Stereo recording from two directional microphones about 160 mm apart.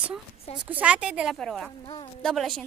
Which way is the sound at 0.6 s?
10° right (ahead or behind).